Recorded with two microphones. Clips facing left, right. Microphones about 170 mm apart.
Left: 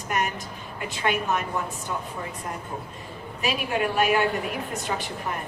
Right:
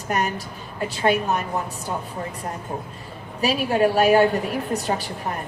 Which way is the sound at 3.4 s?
35° right (ahead or behind).